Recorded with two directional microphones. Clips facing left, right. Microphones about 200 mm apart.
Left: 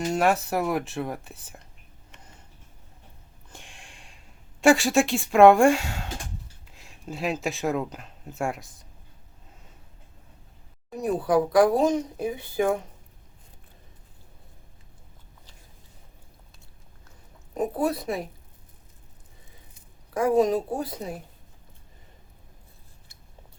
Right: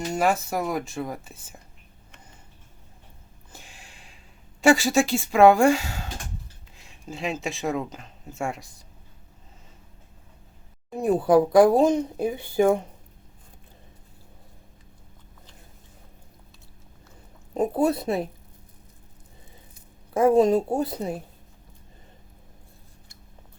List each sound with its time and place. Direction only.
0.1 s speech: centre (ahead or behind)
3.5 s a sound: 5° right (ahead or behind)
4.6 s speech: centre (ahead or behind)
11.3 s speech: 25° right (ahead or behind)
17.5 s speech: 25° right (ahead or behind)
20.1 s speech: 25° right (ahead or behind)